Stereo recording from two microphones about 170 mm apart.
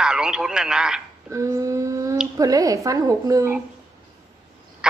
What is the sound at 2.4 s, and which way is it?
A woman's voice, 20° right (ahead or behind).